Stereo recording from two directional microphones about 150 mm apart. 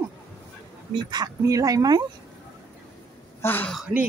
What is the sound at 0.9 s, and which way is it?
Speech, 25° right (ahead or behind).